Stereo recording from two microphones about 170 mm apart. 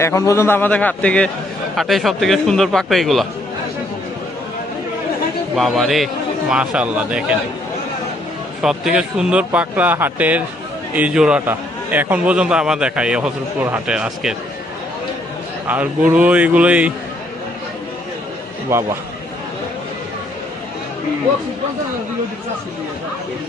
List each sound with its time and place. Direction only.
0.0 s a man's voice: 15° left (ahead or behind); by 3.2 s centre (ahead or behind)
5.5 s a man's voice: centre (ahead or behind)
8.6 s a man's voice: 5° right (ahead or behind)
15.6 s speech: 10° right (ahead or behind)
18.7 s speech: 15° right (ahead or behind)